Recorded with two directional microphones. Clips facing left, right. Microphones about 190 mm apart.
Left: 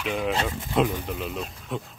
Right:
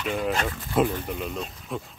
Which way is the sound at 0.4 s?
25° left (ahead or behind).